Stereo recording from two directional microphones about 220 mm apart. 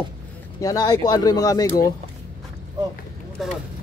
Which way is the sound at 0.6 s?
15° left (ahead or behind).